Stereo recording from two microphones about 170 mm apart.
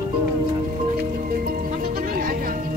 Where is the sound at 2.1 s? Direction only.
55° right (ahead or behind).